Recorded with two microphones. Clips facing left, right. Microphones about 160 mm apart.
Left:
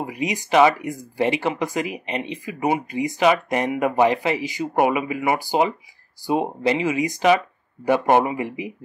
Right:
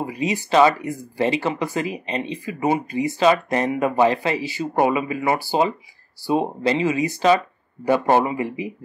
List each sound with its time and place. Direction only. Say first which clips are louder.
0.0 s speech: right 2 dB; 15° left (ahead or behind)